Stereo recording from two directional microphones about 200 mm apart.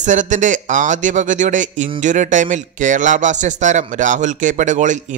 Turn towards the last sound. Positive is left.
turn(degrees=-40)  # may be behind; listen again after turning